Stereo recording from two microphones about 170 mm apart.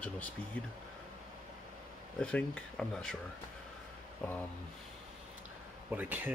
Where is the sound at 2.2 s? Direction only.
5° left (ahead or behind).